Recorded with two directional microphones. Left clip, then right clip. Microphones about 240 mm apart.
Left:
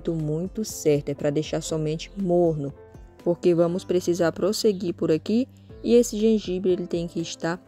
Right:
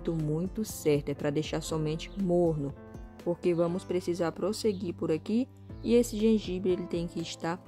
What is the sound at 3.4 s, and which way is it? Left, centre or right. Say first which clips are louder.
Speech: left 7 dB; centre.